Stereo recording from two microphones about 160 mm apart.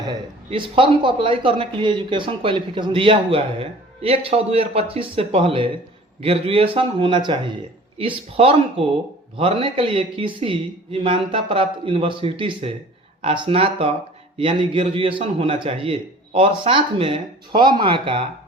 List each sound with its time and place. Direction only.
0.1 s speech: 30° right (ahead or behind)